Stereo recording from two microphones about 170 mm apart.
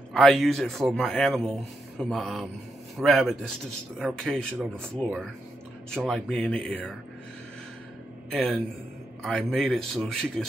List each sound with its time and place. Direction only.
0.1 s a man's voice: centre (ahead or behind)
8.3 s a man's voice: 5° left (ahead or behind)